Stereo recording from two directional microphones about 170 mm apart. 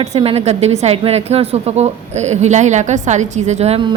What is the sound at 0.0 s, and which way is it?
A woman's voice, 35° right (ahead or behind).